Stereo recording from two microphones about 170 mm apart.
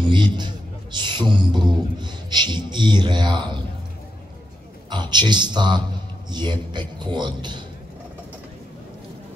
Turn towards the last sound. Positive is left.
turn(degrees=-25)  # may be behind; listen again after turning